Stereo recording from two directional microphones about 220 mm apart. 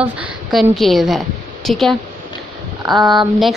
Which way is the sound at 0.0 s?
5° right (ahead or behind).